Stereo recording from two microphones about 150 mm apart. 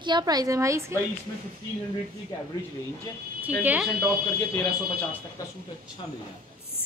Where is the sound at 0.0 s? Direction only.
30° right (ahead or behind).